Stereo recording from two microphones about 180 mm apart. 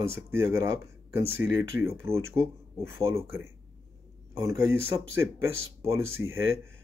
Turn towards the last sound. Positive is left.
turn(degrees=-15)  # may be behind; listen again after turning